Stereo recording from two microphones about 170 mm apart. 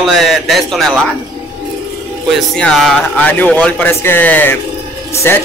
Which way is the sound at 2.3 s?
Centre (ahead or behind).